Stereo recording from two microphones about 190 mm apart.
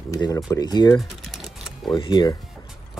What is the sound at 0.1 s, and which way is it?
Speech, 15° left (ahead or behind).